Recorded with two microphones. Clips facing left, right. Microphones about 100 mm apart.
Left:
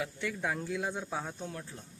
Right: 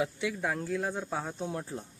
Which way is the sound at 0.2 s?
5° right (ahead or behind).